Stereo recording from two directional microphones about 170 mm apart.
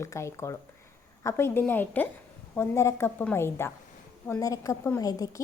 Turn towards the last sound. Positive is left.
turn(degrees=20)  # may be behind; listen again after turning